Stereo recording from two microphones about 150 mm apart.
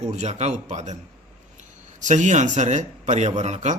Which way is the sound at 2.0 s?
55° right (ahead or behind).